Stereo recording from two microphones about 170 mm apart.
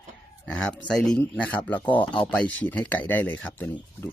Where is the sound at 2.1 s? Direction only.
30° left (ahead or behind).